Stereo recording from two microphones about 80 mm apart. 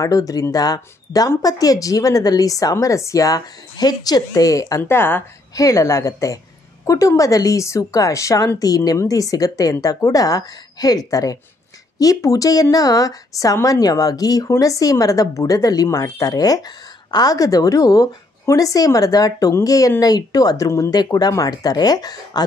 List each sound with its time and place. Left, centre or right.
0.0 s a woman's voice: left
4.8 s speech: left
5.6 s a woman's voice: left
20.9 s speech: left